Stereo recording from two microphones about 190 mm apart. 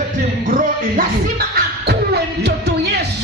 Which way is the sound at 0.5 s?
45° right (ahead or behind).